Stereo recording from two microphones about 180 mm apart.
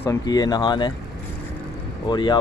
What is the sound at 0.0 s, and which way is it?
Speech, 20° left (ahead or behind).